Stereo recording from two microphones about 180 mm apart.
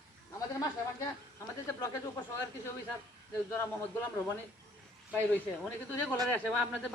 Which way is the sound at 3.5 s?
15° left (ahead or behind).